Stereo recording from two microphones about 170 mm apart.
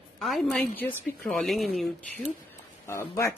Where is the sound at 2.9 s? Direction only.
15° left (ahead or behind).